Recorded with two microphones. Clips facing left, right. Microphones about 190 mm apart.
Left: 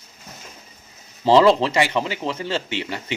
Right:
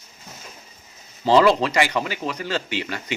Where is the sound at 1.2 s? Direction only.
25° left (ahead or behind).